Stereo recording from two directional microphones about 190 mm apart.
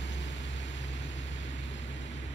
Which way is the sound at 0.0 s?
70° left (ahead or behind).